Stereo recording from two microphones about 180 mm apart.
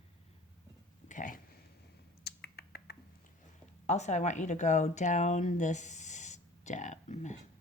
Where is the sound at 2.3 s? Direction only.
60° left (ahead or behind).